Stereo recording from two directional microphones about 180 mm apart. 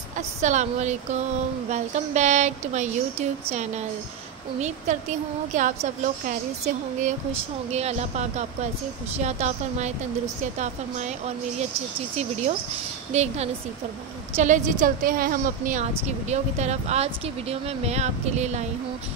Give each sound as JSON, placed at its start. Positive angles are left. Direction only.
{"t": 0.1, "sound": "a woman's voice", "side_deg": -40}
{"t": 7.7, "sound": "a woman's voice", "side_deg": -35}